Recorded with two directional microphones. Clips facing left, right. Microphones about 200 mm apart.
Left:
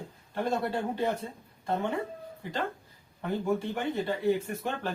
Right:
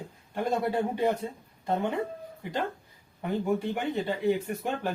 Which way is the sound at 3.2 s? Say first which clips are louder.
Right 1 dB; 15° right (ahead or behind).